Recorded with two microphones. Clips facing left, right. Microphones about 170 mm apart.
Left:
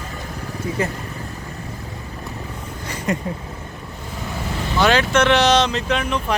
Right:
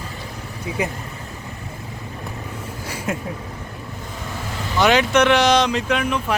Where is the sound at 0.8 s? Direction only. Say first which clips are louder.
Even; 15° right (ahead or behind).